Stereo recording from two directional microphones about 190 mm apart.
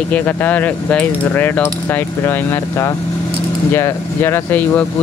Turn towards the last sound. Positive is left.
turn(degrees=10)  # may be behind; listen again after turning